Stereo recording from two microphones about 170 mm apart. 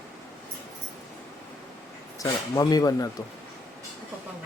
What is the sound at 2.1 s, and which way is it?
Speech, 20° left (ahead or behind).